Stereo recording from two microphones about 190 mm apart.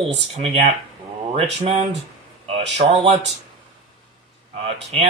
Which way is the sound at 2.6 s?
30° right (ahead or behind).